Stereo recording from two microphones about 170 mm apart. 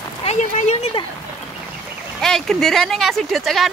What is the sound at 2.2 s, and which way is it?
Speech, 5° left (ahead or behind).